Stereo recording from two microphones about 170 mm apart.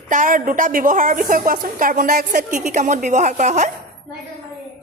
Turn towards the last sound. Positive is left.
turn(degrees=-45)  # may be behind; listen again after turning